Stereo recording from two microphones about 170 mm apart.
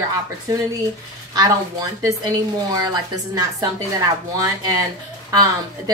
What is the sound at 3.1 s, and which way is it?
Speech, 20° right (ahead or behind).